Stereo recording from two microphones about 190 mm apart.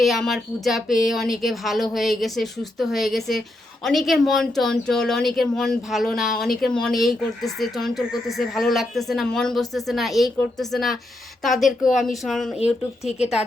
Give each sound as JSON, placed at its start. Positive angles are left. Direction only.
{"t": 0.0, "sound": "speech", "side_deg": 0}
{"t": 11.9, "sound": "a woman's voice", "side_deg": 40}
{"t": 12.2, "sound": "speech", "side_deg": 0}
{"t": 13.1, "sound": "a woman's voice", "side_deg": 35}